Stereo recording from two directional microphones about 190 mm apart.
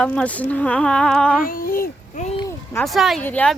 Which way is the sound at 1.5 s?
45° left (ahead or behind).